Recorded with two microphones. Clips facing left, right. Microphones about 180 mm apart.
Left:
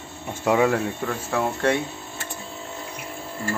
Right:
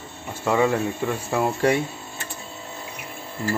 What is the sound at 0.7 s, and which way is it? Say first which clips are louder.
Speech: right 1 dB; 5° right (ahead or behind).